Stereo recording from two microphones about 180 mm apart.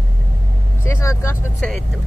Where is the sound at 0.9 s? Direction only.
15° left (ahead or behind).